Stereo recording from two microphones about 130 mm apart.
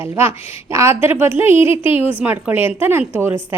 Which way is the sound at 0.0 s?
20° right (ahead or behind).